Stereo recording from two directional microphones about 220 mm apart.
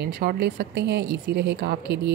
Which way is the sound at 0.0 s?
45° right (ahead or behind).